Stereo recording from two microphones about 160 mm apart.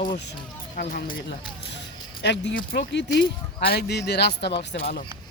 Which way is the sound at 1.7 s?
90° left.